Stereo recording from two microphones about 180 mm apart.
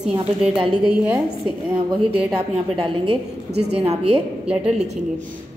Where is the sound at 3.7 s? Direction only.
35° right (ahead or behind).